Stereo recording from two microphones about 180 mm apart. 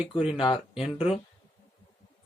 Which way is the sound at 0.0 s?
35° left (ahead or behind).